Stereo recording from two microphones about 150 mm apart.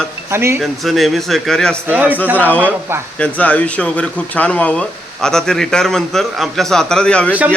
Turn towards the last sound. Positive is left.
turn(degrees=5)  # may be behind; listen again after turning